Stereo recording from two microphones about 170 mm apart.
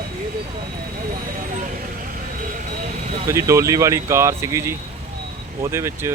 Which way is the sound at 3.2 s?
15° right (ahead or behind).